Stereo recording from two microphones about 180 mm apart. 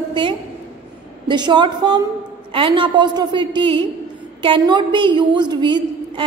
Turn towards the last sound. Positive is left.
turn(degrees=-25)  # may be behind; listen again after turning